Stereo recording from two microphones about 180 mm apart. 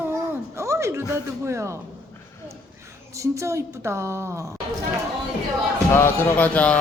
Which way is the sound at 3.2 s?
15° right (ahead or behind).